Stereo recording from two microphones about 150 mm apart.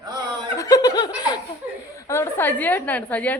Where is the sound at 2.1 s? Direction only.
15° left (ahead or behind).